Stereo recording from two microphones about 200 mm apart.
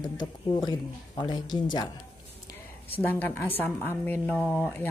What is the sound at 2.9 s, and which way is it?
Speech, 10° left (ahead or behind).